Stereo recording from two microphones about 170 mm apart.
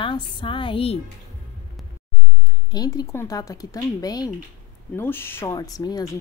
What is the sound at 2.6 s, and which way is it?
Speech, 20° left (ahead or behind).